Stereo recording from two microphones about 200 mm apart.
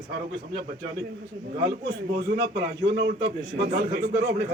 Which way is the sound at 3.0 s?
55° right (ahead or behind).